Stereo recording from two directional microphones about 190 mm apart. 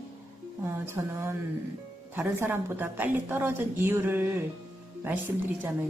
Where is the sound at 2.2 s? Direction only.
10° right (ahead or behind).